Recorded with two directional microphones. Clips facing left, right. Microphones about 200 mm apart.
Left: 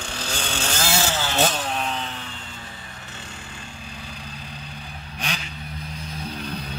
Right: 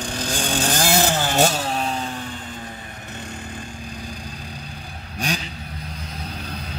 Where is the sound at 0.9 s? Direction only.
50° right (ahead or behind).